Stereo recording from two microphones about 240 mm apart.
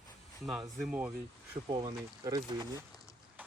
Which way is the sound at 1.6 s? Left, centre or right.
Right.